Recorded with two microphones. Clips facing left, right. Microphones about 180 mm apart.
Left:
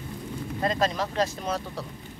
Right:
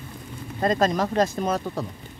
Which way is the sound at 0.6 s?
45° right (ahead or behind).